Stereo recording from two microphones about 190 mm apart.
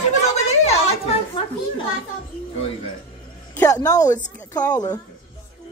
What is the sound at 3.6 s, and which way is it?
Speech, 20° left (ahead or behind).